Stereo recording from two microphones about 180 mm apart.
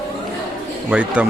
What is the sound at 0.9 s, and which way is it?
Speech, 5° right (ahead or behind).